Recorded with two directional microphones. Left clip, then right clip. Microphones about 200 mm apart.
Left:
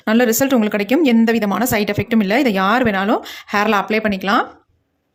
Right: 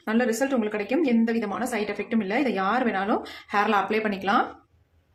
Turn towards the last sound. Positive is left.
turn(degrees=45)  # may be behind; listen again after turning